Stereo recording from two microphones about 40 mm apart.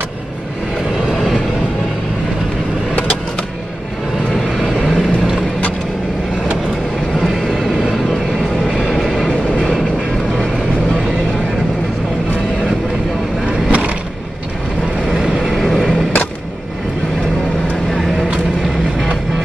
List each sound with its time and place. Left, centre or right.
4.5 s vehicle: centre
7.2 s vehicle: centre
8.9 s train: centre
13.7 s vehicle: right
15.1 s vehicle: centre
15.7 s a sound: centre
17.8 s vehicle: centre